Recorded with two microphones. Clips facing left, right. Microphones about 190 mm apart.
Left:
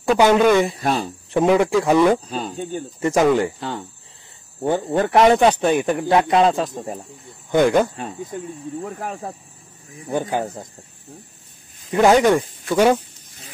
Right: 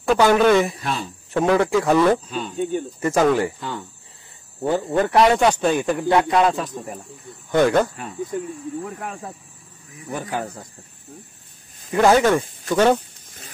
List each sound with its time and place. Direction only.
0.2 s speech: 15° left (ahead or behind)
0.8 s speech: 45° left (ahead or behind)
1.3 s speech: 15° left (ahead or behind)
2.2 s speech: 35° left (ahead or behind)
3.0 s speech: 15° left (ahead or behind)
7.5 s speech: 10° left (ahead or behind)
7.9 s speech: 30° left (ahead or behind)
9.9 s speech: 30° left (ahead or behind)
11.9 s speech: 15° left (ahead or behind)